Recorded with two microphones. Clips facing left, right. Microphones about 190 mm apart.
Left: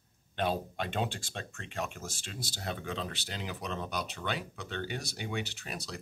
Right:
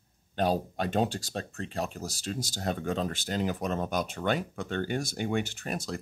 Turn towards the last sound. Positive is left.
turn(degrees=-50)  # may be behind; listen again after turning